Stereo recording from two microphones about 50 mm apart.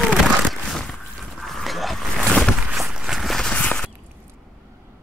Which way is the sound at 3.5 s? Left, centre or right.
Left.